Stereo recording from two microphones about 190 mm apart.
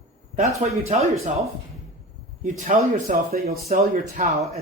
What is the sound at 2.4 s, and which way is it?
Speech, 40° right (ahead or behind).